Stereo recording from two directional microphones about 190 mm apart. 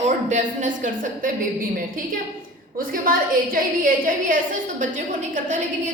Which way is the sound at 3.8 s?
45° right (ahead or behind).